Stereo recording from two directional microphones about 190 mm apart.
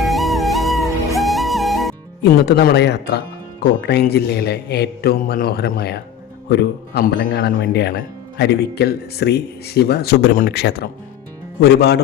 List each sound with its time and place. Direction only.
0.0 s music: centre (ahead or behind)
2.2 s speech: 60° left (ahead or behind)
7.6 s speech: 60° left (ahead or behind)